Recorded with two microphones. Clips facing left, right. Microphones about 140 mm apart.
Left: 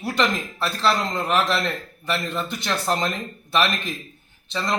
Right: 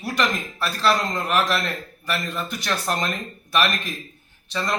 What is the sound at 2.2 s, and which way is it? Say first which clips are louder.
Speech: left 2 dB; 30° left (ahead or behind).